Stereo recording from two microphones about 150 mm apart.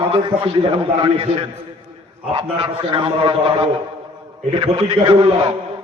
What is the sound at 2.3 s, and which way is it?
A man's voice, 35° right (ahead or behind).